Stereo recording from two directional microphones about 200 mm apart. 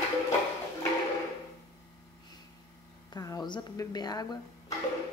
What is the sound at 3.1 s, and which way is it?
Speech, 15° left (ahead or behind).